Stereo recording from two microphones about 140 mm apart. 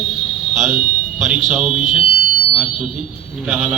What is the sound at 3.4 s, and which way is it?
Speech, 10° right (ahead or behind).